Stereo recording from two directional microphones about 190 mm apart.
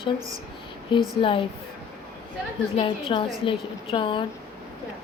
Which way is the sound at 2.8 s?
25° left (ahead or behind).